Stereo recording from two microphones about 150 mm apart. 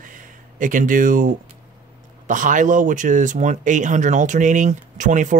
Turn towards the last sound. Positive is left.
turn(degrees=-55)  # may be behind; listen again after turning